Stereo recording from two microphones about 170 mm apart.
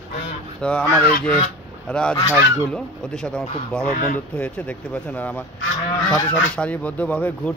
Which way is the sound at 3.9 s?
55° left (ahead or behind).